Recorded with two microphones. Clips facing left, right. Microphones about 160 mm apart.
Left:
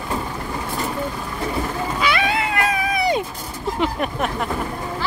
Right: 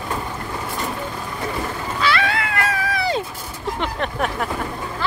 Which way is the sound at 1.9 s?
15° left (ahead or behind).